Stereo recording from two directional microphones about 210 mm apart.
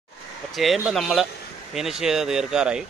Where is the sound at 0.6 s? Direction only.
Centre (ahead or behind).